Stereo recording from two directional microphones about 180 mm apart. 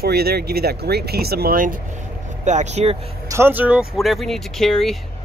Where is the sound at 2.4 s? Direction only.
40° right (ahead or behind).